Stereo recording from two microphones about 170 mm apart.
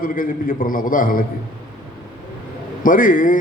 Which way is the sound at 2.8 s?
55° left (ahead or behind).